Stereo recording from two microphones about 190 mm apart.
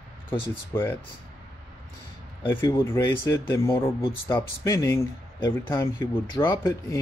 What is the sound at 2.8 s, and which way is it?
Speech, 10° left (ahead or behind).